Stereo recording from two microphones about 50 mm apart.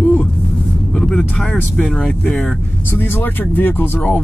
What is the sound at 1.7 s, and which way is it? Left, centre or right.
Speech, centre.